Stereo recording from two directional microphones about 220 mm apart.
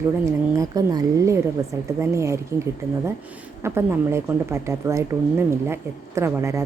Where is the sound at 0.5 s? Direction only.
15° right (ahead or behind).